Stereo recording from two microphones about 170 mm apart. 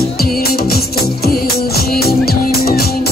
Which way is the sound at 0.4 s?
65° left (ahead or behind).